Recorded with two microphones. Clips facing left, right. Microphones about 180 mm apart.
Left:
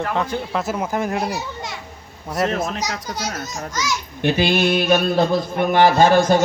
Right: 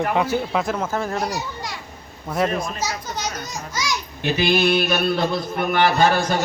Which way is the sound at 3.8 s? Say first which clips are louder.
Left 2 dB; 10° right (ahead or behind).